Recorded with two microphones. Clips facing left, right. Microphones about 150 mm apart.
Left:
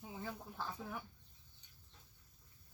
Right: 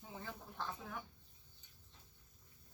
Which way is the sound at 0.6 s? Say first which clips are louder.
Right 1 dB; 10° left (ahead or behind).